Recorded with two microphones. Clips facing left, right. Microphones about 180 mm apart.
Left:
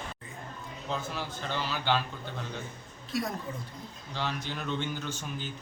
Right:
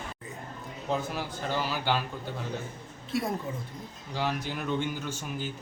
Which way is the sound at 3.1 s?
25° right (ahead or behind).